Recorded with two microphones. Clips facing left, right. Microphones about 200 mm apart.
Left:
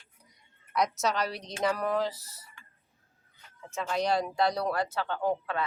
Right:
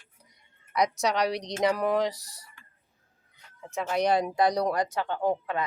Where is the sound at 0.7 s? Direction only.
15° right (ahead or behind).